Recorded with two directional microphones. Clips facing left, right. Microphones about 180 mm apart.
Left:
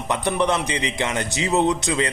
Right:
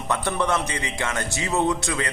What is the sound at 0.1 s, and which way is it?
A man's voice, 20° left (ahead or behind).